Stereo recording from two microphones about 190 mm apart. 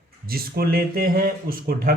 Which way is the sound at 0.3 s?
50° right (ahead or behind).